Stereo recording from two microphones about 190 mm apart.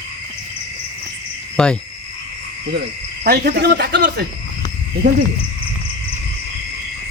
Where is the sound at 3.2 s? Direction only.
55° right (ahead or behind).